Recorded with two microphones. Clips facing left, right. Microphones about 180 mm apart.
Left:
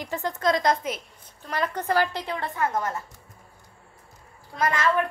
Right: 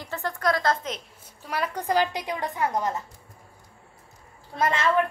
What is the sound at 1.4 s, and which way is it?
A woman's voice, 10° right (ahead or behind).